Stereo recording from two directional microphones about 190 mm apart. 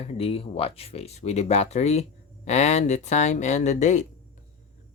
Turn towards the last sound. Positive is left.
turn(degrees=40)  # may be behind; listen again after turning